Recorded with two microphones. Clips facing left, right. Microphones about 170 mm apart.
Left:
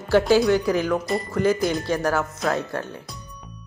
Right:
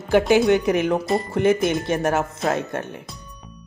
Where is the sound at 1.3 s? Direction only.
25° right (ahead or behind).